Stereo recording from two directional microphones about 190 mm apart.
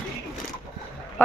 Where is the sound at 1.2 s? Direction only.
10° left (ahead or behind).